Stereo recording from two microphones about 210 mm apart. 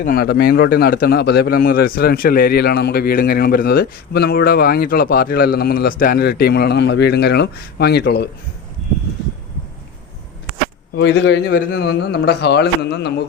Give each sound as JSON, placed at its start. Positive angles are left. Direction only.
{"t": 0.0, "sound": "a man's voice", "side_deg": 45}
{"t": 10.9, "sound": "a man's voice", "side_deg": 55}